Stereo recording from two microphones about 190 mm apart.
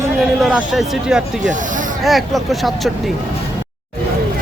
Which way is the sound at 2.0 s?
Centre (ahead or behind).